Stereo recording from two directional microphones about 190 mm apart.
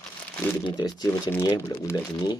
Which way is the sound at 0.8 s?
20° left (ahead or behind).